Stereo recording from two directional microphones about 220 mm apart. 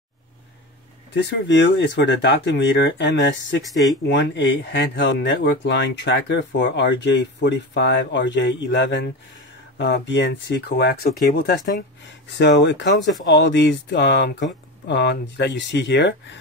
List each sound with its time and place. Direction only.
1.1 s speech: 55° left (ahead or behind)
12.3 s speech: 55° left (ahead or behind)